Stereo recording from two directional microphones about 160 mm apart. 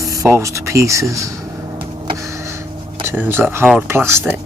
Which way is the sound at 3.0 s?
15° right (ahead or behind).